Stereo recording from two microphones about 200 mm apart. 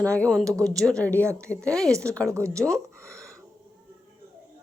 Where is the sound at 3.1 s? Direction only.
15° right (ahead or behind).